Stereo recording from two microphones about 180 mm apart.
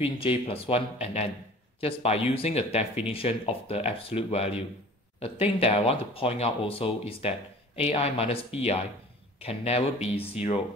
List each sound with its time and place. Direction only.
0.0 s speech: 30° left (ahead or behind)